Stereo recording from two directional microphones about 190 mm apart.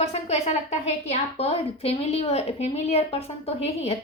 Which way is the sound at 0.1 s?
35° left (ahead or behind).